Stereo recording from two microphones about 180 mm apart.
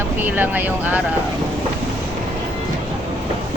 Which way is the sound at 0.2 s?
10° right (ahead or behind).